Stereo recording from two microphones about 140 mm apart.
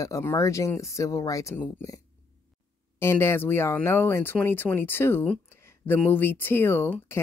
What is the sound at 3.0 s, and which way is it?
Speech, 15° left (ahead or behind).